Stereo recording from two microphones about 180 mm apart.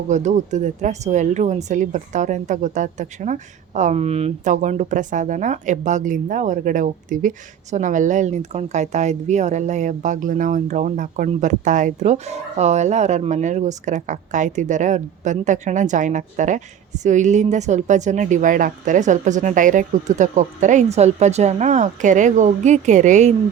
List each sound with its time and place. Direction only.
0.1 s speech: 40° right (ahead or behind)